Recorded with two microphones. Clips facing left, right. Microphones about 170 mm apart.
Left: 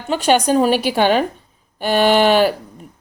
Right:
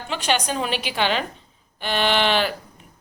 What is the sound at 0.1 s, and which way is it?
A woman's voice, 45° left (ahead or behind).